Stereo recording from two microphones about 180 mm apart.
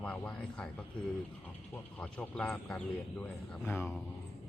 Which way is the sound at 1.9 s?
5° left (ahead or behind).